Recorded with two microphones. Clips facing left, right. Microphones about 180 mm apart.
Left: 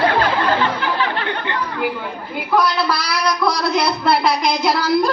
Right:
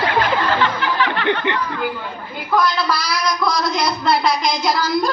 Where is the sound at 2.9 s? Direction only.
60° left (ahead or behind).